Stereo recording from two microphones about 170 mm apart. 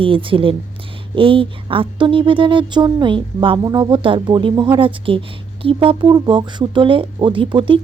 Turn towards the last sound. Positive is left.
turn(degrees=-30)  # may be behind; listen again after turning